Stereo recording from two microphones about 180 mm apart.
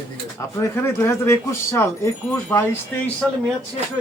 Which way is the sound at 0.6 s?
15° left (ahead or behind).